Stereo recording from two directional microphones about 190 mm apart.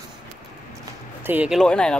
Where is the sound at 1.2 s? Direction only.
10° right (ahead or behind).